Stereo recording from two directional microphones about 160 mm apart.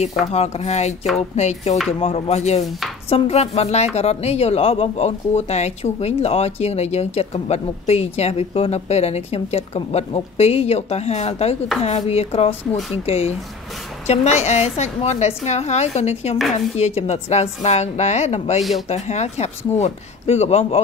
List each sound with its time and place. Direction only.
0.3 s a woman's voice: 45° left (ahead or behind)